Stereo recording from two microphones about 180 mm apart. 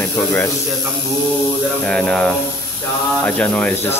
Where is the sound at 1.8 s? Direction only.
5° left (ahead or behind).